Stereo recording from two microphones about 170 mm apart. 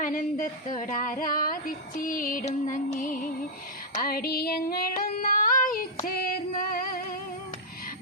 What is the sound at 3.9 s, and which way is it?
Female singing, 60° left (ahead or behind).